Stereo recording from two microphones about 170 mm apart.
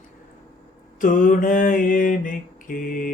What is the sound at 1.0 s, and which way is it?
Music, 50° left (ahead or behind).